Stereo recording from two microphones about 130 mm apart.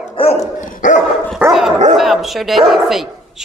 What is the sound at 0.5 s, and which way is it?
Dog, 90° left.